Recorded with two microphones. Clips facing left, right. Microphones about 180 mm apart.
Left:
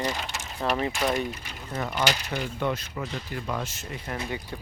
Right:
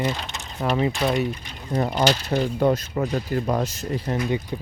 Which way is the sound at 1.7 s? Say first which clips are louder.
Right 7 dB; 35° right (ahead or behind).